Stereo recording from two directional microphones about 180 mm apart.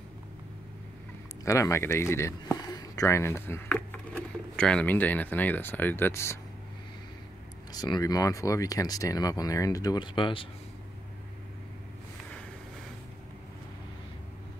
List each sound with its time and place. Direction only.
1.4 s speech: 15° left (ahead or behind)
7.7 s speech: 20° left (ahead or behind)